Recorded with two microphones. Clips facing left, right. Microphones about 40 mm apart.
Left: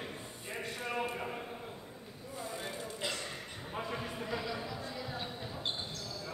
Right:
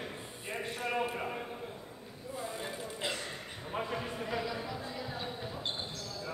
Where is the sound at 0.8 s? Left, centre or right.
Centre.